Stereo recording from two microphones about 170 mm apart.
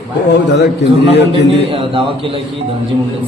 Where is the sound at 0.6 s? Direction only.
90° left.